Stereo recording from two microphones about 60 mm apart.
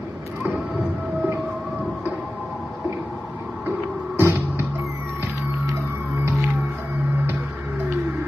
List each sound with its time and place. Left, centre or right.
4.2 s music: right